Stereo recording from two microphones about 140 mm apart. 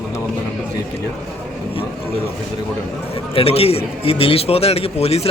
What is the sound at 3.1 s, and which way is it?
A man's voice, 40° left (ahead or behind).